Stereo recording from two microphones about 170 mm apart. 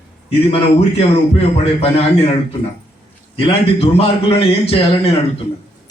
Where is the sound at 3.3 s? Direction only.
35° left (ahead or behind).